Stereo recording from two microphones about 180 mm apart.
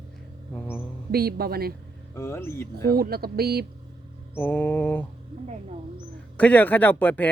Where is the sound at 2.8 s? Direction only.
60° right (ahead or behind).